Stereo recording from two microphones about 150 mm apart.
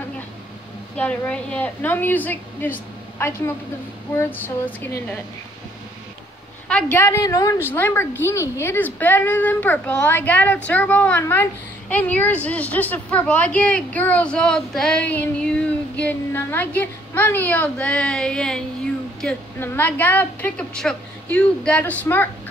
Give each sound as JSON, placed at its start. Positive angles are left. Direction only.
{"t": 0.9, "sound": "a woman's voice", "side_deg": 10}
{"t": 6.7, "sound": "a woman's voice", "side_deg": 10}